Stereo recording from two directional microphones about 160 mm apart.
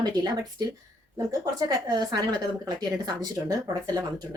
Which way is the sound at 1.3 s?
20° right (ahead or behind).